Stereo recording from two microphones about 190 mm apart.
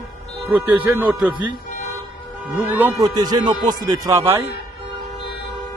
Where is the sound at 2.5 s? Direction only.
10° right (ahead or behind).